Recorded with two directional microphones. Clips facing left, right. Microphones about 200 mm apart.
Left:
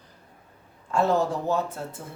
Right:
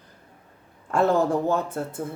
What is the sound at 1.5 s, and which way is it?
Speech, 55° right (ahead or behind).